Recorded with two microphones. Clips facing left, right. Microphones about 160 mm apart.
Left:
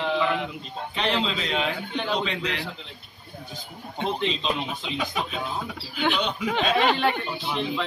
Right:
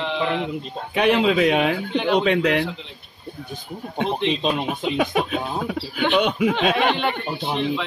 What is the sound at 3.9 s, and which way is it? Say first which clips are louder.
Speech: right 4 dB; 60° right (ahead or behind).